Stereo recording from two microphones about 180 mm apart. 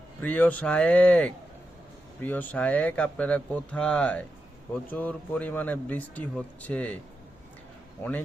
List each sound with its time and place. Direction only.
0.2 s speech: 10° left (ahead or behind)